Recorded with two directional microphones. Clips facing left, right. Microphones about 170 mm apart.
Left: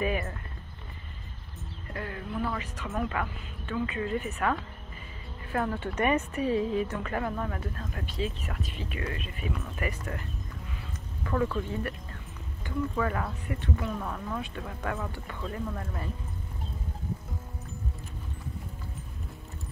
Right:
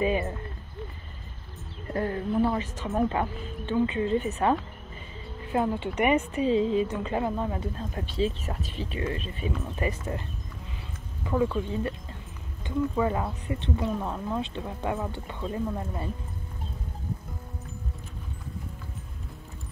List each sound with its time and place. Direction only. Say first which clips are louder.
0.0 s speech: right 4 dB; 20° right (ahead or behind)
1.9 s speech: right 9 dB; 35° right (ahead or behind)
11.2 s speech: right 3 dB; 15° right (ahead or behind)